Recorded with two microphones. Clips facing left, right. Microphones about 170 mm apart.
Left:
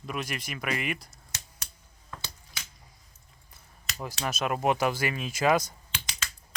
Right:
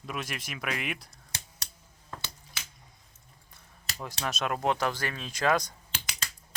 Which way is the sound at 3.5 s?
5° left (ahead or behind).